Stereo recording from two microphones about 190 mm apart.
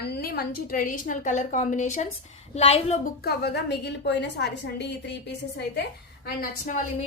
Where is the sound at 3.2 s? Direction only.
55° left (ahead or behind).